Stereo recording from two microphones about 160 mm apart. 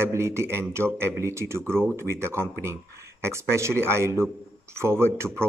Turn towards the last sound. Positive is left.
turn(degrees=-15)  # may be behind; listen again after turning